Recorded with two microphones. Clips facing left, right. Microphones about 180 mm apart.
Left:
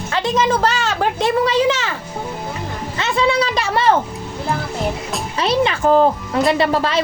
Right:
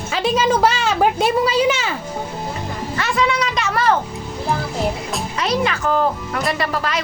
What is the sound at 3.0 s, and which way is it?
Speech, 25° left (ahead or behind).